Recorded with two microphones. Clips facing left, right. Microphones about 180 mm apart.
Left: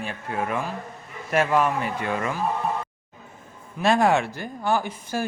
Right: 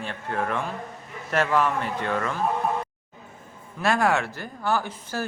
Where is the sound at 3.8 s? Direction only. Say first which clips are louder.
Left 3 dB; 20° left (ahead or behind).